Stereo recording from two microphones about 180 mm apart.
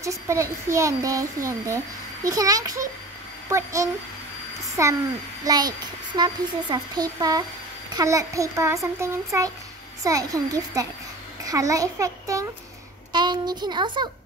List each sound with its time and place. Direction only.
0.0 s a child's voice: 15° right (ahead or behind)